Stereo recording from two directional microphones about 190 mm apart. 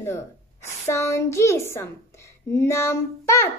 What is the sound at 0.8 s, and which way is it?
A child's voice, 15° left (ahead or behind).